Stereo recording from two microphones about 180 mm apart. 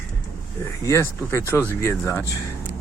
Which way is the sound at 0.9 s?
15° left (ahead or behind).